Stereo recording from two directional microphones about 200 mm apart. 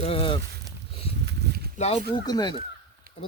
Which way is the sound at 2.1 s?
20° left (ahead or behind).